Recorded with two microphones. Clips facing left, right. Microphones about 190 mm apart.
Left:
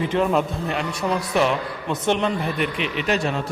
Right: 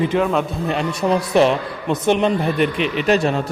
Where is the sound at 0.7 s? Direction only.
25° right (ahead or behind).